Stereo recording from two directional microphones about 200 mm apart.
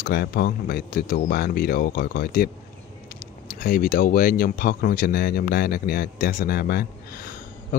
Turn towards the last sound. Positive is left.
turn(degrees=50)  # may be behind; listen again after turning